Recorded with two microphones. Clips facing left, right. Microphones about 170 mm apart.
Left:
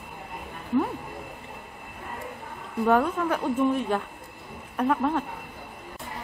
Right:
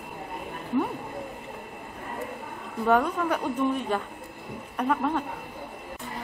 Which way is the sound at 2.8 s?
5° left (ahead or behind).